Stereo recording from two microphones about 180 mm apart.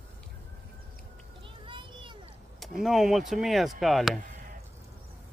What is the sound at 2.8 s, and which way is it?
Speech, centre (ahead or behind).